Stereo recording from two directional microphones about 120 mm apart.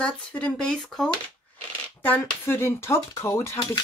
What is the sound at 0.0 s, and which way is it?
Speech, 10° left (ahead or behind).